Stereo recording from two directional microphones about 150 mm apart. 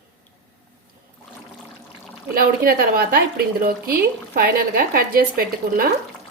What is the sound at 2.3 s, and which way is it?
A woman's voice, 75° right (ahead or behind).